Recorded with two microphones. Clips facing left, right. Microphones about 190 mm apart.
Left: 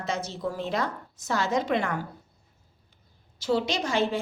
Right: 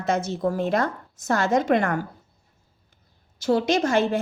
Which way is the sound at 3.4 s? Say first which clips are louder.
Right 5 dB; 50° right (ahead or behind).